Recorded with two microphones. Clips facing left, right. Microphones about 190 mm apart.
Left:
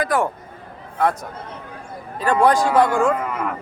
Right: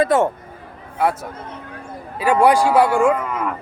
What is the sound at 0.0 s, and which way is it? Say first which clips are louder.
Speech: right 5 dB; 25° right (ahead or behind).